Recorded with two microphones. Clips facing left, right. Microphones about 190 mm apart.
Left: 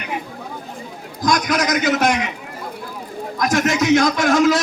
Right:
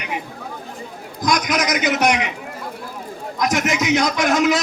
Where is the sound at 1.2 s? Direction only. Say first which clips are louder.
Left 1 dB; 20° right (ahead or behind).